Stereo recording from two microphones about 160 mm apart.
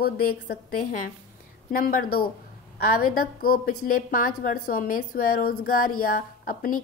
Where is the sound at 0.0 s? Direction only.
70° left (ahead or behind).